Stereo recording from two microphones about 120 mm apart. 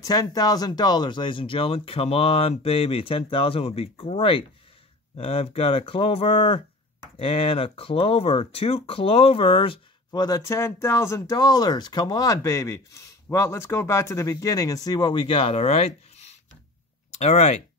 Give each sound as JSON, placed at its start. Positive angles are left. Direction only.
{"t": 0.0, "sound": "speech", "side_deg": 30}
{"t": 10.1, "sound": "speech", "side_deg": 35}
{"t": 17.1, "sound": "speech", "side_deg": 70}